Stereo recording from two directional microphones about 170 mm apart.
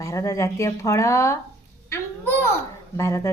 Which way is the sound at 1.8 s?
15° left (ahead or behind).